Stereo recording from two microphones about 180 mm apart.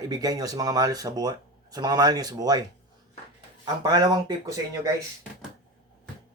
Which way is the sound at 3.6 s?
20° right (ahead or behind).